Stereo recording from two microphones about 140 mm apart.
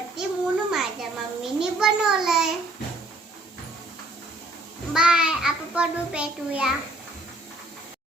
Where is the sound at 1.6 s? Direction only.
5° right (ahead or behind).